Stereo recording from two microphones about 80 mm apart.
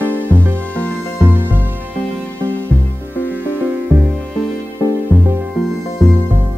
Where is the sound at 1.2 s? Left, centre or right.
Right.